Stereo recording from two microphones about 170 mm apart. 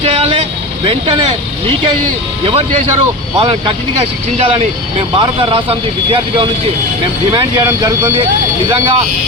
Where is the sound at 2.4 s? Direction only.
35° right (ahead or behind).